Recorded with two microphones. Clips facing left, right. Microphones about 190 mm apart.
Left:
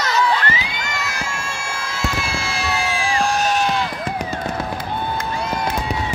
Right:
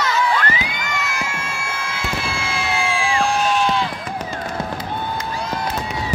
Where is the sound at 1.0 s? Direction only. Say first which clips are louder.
Right 1 dB; 40° left (ahead or behind).